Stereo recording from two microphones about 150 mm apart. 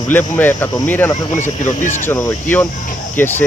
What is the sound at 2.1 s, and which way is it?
Speech, 15° left (ahead or behind).